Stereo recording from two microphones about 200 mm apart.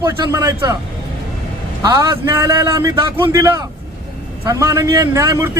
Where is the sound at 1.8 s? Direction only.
15° right (ahead or behind).